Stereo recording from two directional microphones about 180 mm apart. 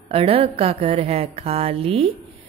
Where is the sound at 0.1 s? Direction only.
30° right (ahead or behind).